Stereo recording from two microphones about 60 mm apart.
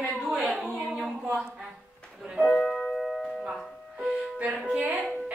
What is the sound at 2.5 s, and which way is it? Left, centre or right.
Music, centre.